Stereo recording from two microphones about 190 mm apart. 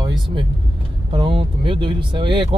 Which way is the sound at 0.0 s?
25° right (ahead or behind).